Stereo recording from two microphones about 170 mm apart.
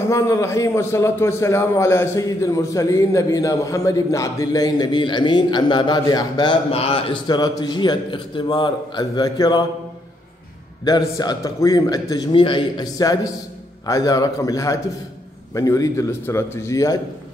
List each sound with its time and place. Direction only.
0.0 s a man's voice: 15° left (ahead or behind)
6.7 s a man's voice: 35° left (ahead or behind)
10.9 s a man's voice: 25° left (ahead or behind)